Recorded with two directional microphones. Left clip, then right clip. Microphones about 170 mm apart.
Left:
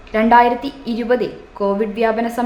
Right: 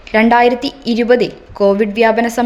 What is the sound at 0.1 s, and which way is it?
A woman's voice, 50° right (ahead or behind).